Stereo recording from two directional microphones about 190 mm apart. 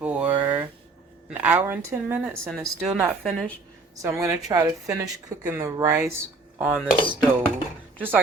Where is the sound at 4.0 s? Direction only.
15° right (ahead or behind).